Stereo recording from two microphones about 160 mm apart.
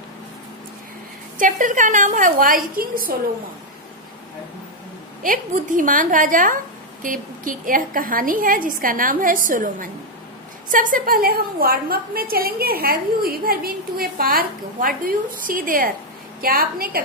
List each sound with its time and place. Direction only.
1.4 s a woman's voice: 55° right (ahead or behind)
5.2 s a woman's voice: 55° right (ahead or behind)